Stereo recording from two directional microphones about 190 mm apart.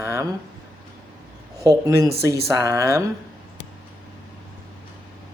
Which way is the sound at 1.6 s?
15° right (ahead or behind).